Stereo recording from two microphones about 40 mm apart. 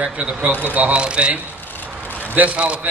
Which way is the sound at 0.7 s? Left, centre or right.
Right.